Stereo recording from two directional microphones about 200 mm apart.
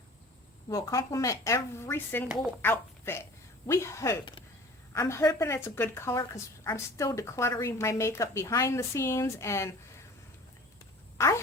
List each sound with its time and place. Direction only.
0.7 s a woman's voice: 15° left (ahead or behind)
11.2 s quack: 15° left (ahead or behind)